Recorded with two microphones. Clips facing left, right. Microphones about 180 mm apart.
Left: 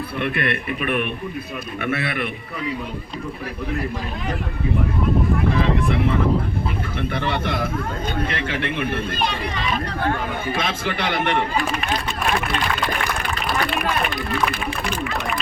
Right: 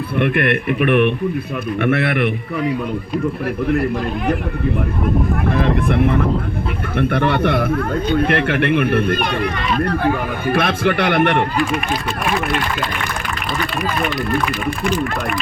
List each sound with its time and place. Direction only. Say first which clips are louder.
0.2 s speech: right 7 dB; 55° right (ahead or behind)
5.5 s speech: right 3 dB; 55° right (ahead or behind)